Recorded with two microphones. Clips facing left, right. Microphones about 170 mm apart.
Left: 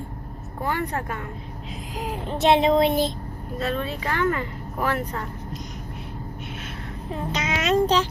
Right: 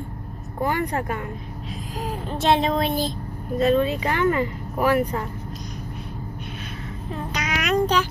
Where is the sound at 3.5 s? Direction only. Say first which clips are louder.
Right 8 dB; 20° right (ahead or behind).